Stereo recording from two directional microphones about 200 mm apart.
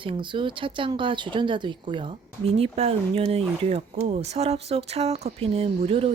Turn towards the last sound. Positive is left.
turn(degrees=-30)  # may be behind; listen again after turning